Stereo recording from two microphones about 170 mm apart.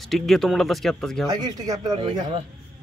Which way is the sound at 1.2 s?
20° right (ahead or behind).